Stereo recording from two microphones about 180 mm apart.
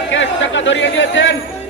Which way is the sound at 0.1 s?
90° left.